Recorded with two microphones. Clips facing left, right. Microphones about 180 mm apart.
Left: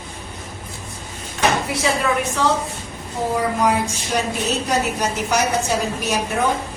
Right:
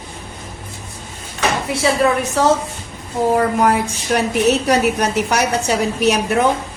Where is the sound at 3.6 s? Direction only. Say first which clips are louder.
Right 3 dB; 60° right (ahead or behind).